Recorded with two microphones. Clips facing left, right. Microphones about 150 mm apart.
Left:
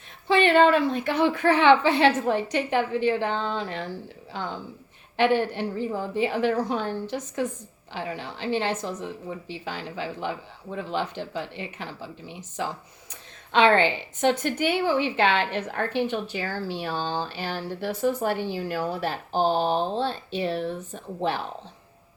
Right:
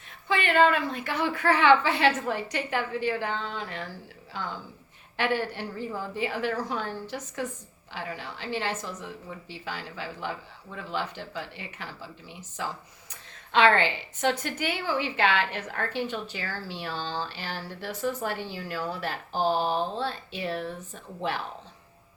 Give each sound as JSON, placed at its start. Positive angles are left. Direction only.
{"t": 0.3, "sound": "a woman's voice", "side_deg": 25}
{"t": 16.6, "sound": "speech", "side_deg": 50}
{"t": 17.0, "sound": "a sound", "side_deg": 15}
{"t": 17.3, "sound": "speech", "side_deg": 55}
{"t": 18.3, "sound": "a sound", "side_deg": 20}
{"t": 18.9, "sound": "a woman's voice", "side_deg": 25}